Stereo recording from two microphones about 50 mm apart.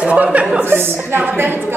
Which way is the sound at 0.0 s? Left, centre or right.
Right.